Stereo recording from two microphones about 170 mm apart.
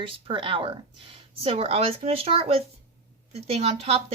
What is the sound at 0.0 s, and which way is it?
Speech, 30° right (ahead or behind).